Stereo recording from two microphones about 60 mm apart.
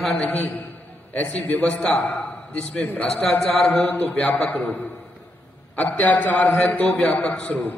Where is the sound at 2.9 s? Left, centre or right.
Left.